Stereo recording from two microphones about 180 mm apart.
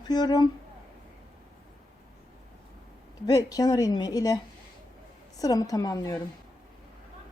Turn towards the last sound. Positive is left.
turn(degrees=20)  # may be behind; listen again after turning